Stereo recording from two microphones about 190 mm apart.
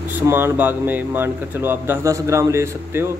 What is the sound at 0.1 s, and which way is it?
Speech, 10° right (ahead or behind).